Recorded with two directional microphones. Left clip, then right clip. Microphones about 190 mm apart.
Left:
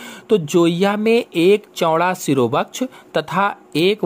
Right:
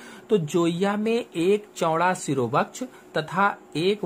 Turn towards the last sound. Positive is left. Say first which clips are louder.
# left 7 dB
turn(degrees=40)  # may be behind; listen again after turning